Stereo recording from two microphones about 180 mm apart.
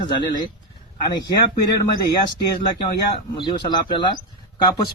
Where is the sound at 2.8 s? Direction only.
25° left (ahead or behind).